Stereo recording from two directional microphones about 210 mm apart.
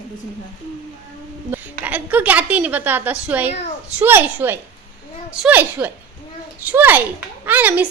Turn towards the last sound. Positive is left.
turn(degrees=-10)  # may be behind; listen again after turning